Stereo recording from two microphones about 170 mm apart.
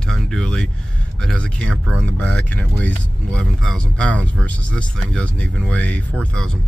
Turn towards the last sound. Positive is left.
turn(degrees=5)  # may be behind; listen again after turning